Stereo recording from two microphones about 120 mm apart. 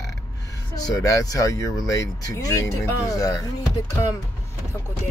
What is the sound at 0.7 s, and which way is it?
Speech, 30° left (ahead or behind).